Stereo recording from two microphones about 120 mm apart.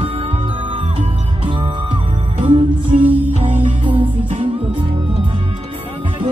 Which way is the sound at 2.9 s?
90° right.